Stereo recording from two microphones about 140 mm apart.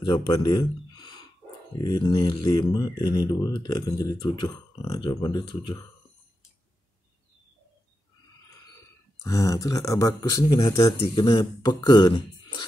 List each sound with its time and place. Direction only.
0.0 s speech: 30° left (ahead or behind)
9.2 s speech: 25° left (ahead or behind)
11.0 s speech: 35° left (ahead or behind)